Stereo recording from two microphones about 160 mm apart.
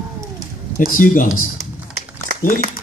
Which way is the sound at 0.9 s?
55° left (ahead or behind).